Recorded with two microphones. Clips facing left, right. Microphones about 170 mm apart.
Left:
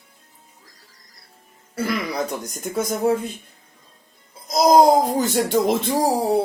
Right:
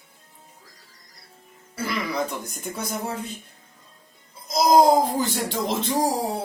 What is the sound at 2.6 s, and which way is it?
Speech, 45° left (ahead or behind).